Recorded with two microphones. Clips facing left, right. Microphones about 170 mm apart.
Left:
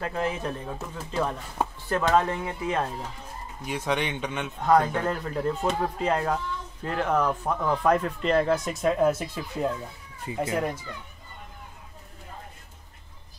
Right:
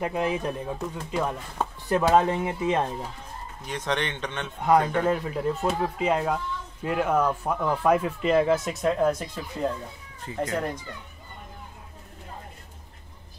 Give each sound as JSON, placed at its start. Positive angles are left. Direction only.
{"t": 0.0, "sound": "speech", "side_deg": -15}
{"t": 1.9, "sound": "speech", "side_deg": -15}
{"t": 3.6, "sound": "a man's voice", "side_deg": 10}
{"t": 4.6, "sound": "a man's voice", "side_deg": -10}